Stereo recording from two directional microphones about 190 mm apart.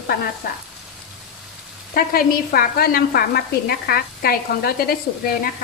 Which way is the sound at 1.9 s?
50° left (ahead or behind).